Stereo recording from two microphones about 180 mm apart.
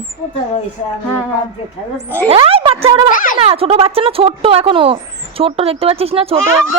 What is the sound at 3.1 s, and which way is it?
Speech, 50° left (ahead or behind).